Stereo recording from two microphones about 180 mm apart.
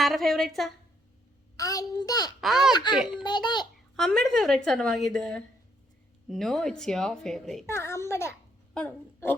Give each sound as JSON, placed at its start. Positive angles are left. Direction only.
{"t": 0.0, "sound": "a woman's voice", "side_deg": 0}
{"t": 1.5, "sound": "a child's voice", "side_deg": 20}
{"t": 2.4, "sound": "a woman's voice", "side_deg": 0}
{"t": 3.2, "sound": "a child's voice", "side_deg": 25}
{"t": 3.9, "sound": "a woman's voice", "side_deg": 5}
{"t": 7.7, "sound": "a child's voice", "side_deg": 15}